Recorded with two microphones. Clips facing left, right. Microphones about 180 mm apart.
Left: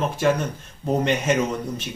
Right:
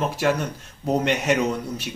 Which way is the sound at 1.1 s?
Centre (ahead or behind).